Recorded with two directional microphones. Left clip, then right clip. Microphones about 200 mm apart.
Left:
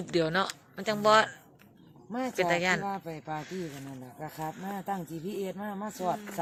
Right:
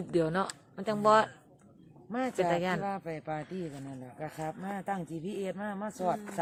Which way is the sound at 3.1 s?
30° right (ahead or behind).